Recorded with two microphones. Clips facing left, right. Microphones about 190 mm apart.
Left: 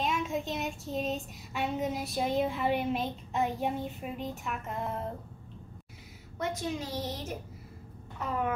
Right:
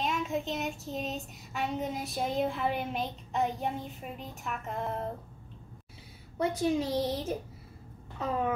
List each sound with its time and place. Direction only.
0.0 s child singing: centre (ahead or behind)
6.3 s a woman's voice: 30° right (ahead or behind)